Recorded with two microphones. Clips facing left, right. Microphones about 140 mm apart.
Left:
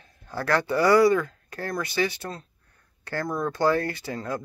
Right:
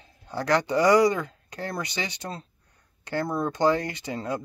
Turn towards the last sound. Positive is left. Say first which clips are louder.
# even
turn(degrees=-20)  # may be behind; listen again after turning